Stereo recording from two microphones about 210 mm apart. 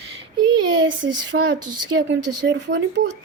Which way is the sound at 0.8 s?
60° right (ahead or behind).